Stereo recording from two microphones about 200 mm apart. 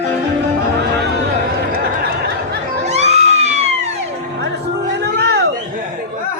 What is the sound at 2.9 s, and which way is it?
Music, 35° right (ahead or behind).